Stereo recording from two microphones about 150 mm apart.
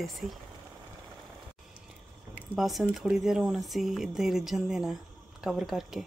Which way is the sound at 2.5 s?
Centre (ahead or behind).